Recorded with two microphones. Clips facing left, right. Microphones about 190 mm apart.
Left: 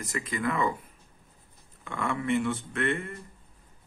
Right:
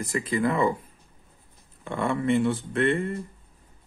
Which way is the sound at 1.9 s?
35° right (ahead or behind).